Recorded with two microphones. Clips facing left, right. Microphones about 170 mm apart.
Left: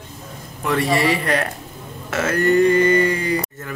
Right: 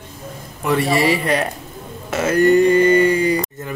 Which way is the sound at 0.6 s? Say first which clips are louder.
Right 2 dB; 10° right (ahead or behind).